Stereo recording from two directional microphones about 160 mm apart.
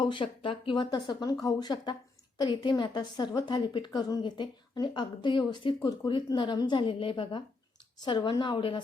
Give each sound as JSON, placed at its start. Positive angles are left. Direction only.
{"t": 0.0, "sound": "a woman's voice", "side_deg": 30}